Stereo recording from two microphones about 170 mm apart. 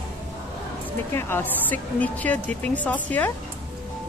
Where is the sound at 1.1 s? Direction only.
15° left (ahead or behind).